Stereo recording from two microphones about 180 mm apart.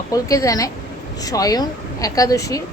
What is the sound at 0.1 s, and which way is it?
A woman's voice, 20° left (ahead or behind).